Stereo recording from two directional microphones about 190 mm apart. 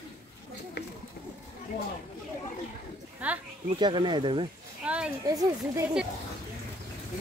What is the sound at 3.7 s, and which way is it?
Speech, 25° right (ahead or behind).